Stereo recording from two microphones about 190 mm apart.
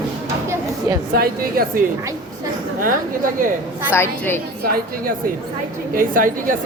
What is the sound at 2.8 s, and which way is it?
Speech, 45° right (ahead or behind).